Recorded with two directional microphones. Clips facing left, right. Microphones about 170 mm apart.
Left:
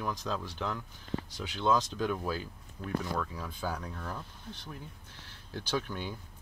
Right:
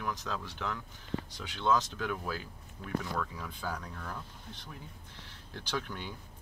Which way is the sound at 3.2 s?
10° left (ahead or behind).